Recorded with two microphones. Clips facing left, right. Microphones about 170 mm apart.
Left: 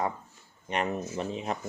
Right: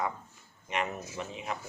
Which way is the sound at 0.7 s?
35° left (ahead or behind).